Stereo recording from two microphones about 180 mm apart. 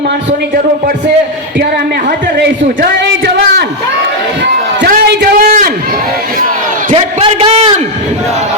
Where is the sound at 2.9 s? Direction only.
70° right (ahead or behind).